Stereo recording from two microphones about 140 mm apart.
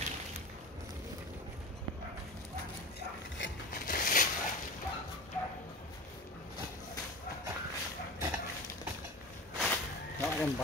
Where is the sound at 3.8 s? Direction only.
70° left (ahead or behind).